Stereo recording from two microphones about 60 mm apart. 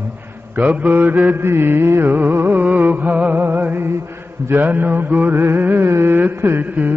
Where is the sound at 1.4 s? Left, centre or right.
Right.